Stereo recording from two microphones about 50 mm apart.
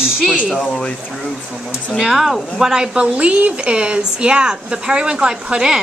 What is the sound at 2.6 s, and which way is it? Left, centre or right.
Speech, centre.